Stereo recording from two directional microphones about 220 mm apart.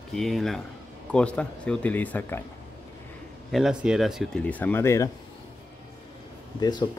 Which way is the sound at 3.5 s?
5° right (ahead or behind).